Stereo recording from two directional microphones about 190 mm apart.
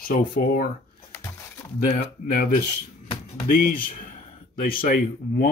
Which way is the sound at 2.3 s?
45° left (ahead or behind).